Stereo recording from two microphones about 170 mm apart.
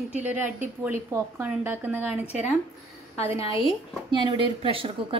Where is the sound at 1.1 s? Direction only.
10° right (ahead or behind).